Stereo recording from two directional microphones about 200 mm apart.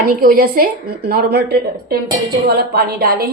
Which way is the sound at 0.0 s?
45° right (ahead or behind).